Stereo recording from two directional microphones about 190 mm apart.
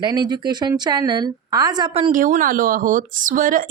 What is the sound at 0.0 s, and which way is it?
A woman's voice, 20° right (ahead or behind).